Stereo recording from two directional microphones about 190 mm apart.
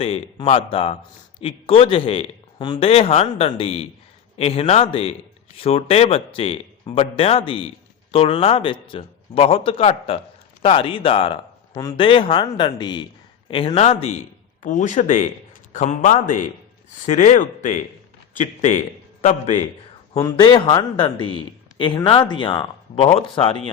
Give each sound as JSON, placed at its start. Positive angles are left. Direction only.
{"t": 0.0, "sound": "speech", "side_deg": 30}
{"t": 20.3, "sound": "speech", "side_deg": 25}